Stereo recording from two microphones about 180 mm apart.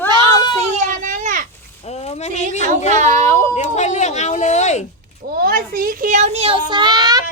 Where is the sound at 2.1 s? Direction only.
40° left (ahead or behind).